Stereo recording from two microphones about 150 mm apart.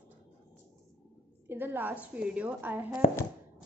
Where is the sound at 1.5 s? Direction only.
15° right (ahead or behind).